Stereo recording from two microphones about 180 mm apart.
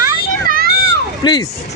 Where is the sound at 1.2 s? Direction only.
25° left (ahead or behind).